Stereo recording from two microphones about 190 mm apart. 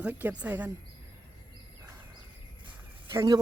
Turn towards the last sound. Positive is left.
turn(degrees=-20)  # may be behind; listen again after turning